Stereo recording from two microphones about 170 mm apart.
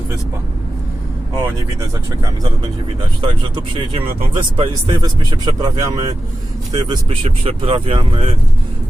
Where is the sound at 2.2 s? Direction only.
30° right (ahead or behind).